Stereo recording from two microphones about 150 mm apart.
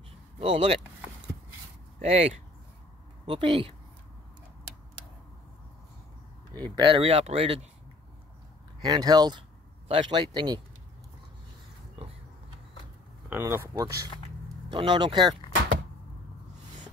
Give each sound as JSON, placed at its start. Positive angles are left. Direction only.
{"t": 0.4, "sound": "speech", "side_deg": -40}
{"t": 2.0, "sound": "speech", "side_deg": -45}
{"t": 6.8, "sound": "speech", "side_deg": -35}
{"t": 8.8, "sound": "speech", "side_deg": -25}
{"t": 13.3, "sound": "speech", "side_deg": -15}
{"t": 14.7, "sound": "speech", "side_deg": -35}